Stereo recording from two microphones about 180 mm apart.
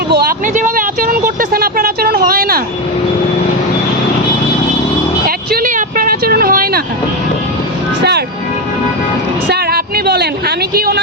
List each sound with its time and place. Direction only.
0.1 s speech: 55° right (ahead or behind)
5.5 s vehicle: 55° right (ahead or behind)
9.5 s a sound: 60° right (ahead or behind)
10.8 s speech: 55° right (ahead or behind)